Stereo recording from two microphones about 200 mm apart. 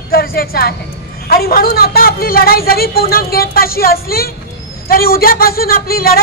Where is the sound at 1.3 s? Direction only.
50° left (ahead or behind).